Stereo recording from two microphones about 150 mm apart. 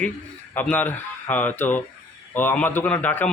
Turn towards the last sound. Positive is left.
turn(degrees=10)  # may be behind; listen again after turning